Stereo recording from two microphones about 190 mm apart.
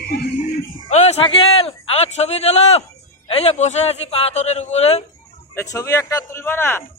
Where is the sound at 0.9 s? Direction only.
35° left (ahead or behind).